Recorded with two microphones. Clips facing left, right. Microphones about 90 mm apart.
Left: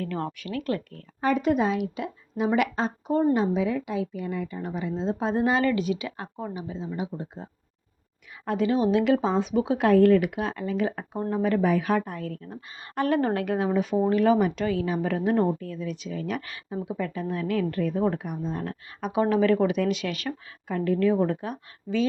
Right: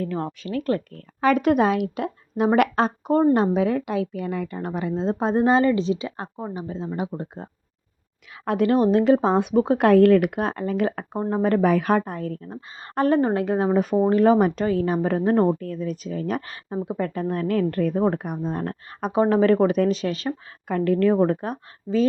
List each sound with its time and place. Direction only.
0.0 s speech: 25° right (ahead or behind)
0.3 s a woman's voice: 35° right (ahead or behind)
1.2 s speech: 70° right (ahead or behind); by 5.3 s 50° right (ahead or behind)
5.3 s a woman's voice: 35° right (ahead or behind)
6.7 s speech: 55° right (ahead or behind)
8.4 s speech: 60° right (ahead or behind)
8.9 s a woman's voice: 35° right (ahead or behind)
9.3 s speech: 55° right (ahead or behind)
11.2 s a woman's voice: 40° right (ahead or behind)
11.6 s a woman's voice: 60° right (ahead or behind); by 13.7 s 25° right (ahead or behind)
14.0 s a woman's voice: 40° right (ahead or behind)
20.7 s speech: 60° right (ahead or behind)
21.2 s a woman's voice: 40° right (ahead or behind)